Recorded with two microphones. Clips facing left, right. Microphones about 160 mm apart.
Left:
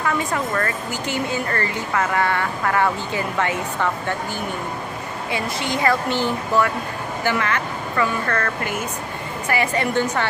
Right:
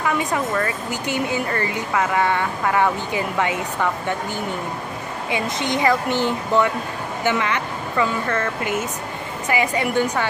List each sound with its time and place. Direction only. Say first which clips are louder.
0.0 s speech: right 1 dB; 15° right (ahead or behind)
5.3 s speech: right 2 dB; 20° right (ahead or behind)